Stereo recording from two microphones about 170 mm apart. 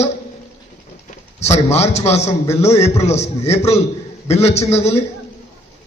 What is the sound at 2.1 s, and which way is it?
A man's voice, 40° left (ahead or behind).